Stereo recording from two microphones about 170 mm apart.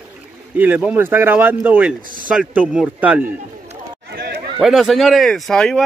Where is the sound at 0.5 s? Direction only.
10° right (ahead or behind).